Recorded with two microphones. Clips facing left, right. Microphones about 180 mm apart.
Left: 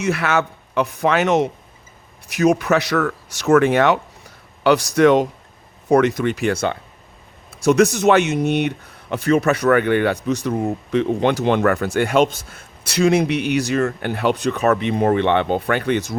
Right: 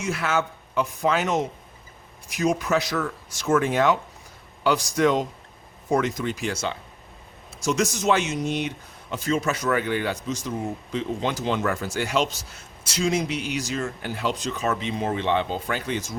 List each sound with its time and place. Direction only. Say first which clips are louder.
0.0 s speech: left 6 dB; 70° left (ahead or behind)